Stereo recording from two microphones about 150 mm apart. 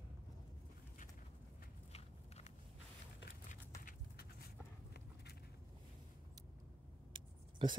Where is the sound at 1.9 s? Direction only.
45° left (ahead or behind).